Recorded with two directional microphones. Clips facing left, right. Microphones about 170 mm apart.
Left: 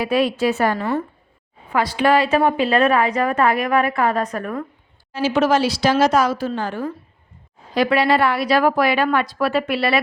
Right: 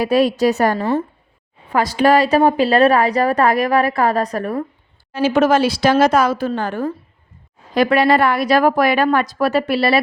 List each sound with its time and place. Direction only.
0.0 s a woman's voice: 40° right (ahead or behind)
5.1 s a woman's voice: 50° right (ahead or behind); by 10.0 s 35° right (ahead or behind)